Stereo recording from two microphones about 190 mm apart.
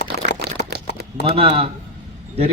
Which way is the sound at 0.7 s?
60° right (ahead or behind).